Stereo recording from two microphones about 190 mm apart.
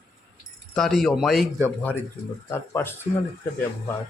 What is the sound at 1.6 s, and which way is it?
Speech, 10° left (ahead or behind).